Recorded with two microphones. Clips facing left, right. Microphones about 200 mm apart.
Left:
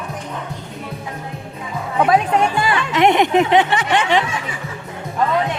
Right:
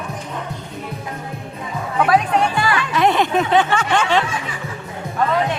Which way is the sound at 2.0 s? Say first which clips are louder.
Left 1 dB; 20° left (ahead or behind).